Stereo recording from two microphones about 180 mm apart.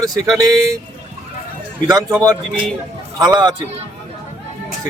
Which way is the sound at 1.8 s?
20° right (ahead or behind).